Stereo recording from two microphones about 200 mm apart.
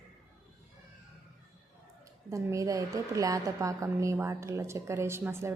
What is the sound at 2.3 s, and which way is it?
A woman's voice, 15° right (ahead or behind).